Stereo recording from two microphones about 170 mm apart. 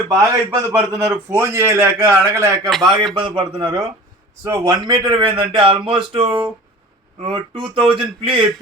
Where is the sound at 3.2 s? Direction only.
30° right (ahead or behind).